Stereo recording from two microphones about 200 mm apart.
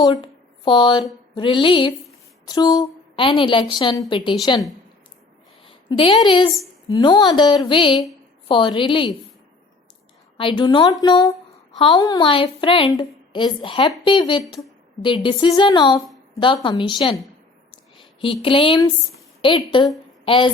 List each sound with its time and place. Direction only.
0.0 s a woman's voice: 25° left (ahead or behind)
5.6 s a woman's voice: 25° left (ahead or behind)
10.3 s a woman's voice: 25° left (ahead or behind)
17.7 s a sound: 25° left (ahead or behind)
18.4 s a woman's voice: 25° left (ahead or behind)